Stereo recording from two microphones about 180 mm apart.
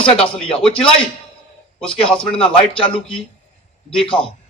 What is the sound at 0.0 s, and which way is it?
Speech, 35° left (ahead or behind).